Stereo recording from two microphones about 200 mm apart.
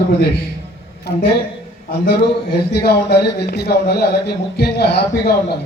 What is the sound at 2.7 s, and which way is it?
Speech, 50° left (ahead or behind).